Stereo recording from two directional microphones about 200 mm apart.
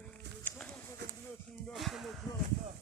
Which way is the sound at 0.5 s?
10° left (ahead or behind).